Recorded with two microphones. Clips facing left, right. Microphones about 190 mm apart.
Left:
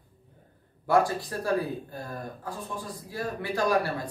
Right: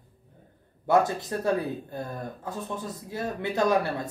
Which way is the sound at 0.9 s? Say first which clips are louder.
Right 1 dB; 20° right (ahead or behind).